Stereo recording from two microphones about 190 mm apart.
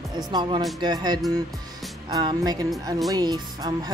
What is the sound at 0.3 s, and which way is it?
Speech, 20° right (ahead or behind).